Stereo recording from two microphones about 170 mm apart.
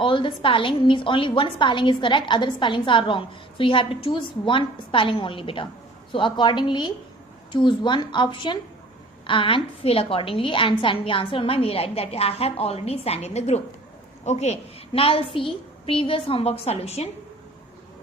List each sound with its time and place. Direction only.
0.0 s a woman's voice: 30° left (ahead or behind)